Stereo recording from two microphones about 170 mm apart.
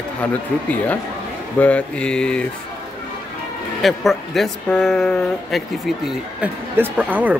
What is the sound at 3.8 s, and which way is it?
Speech, centre (ahead or behind).